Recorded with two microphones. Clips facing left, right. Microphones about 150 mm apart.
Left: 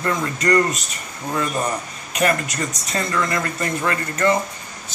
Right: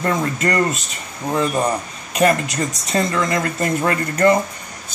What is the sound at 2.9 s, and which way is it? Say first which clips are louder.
Speech: right 4 dB; 25° right (ahead or behind).